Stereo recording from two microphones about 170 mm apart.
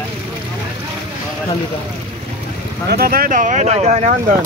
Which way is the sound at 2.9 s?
60° right (ahead or behind).